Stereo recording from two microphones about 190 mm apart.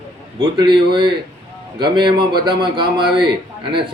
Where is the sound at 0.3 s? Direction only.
25° right (ahead or behind).